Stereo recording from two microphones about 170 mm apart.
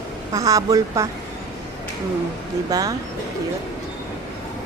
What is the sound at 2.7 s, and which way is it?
Speech, 20° right (ahead or behind).